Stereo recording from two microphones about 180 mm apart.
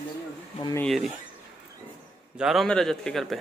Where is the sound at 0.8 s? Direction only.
Centre (ahead or behind).